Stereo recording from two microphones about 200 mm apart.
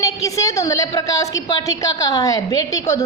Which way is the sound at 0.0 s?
15° left (ahead or behind).